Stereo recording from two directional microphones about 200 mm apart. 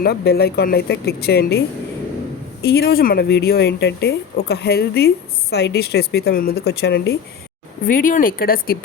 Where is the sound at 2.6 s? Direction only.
50° left (ahead or behind).